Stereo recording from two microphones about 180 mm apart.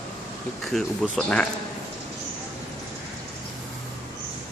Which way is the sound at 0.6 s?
Centre (ahead or behind).